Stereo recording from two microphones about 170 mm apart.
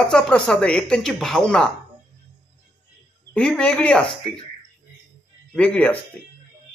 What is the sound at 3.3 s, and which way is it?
Speech, 5° left (ahead or behind).